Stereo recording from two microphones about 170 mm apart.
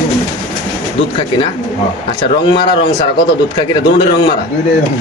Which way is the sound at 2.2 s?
25° left (ahead or behind).